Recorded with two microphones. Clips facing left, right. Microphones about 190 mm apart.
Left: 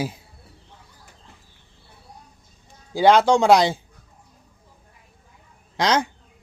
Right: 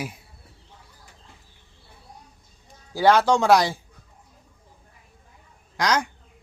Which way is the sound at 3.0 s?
20° left (ahead or behind).